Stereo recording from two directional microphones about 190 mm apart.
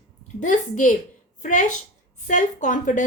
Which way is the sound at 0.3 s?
40° left (ahead or behind).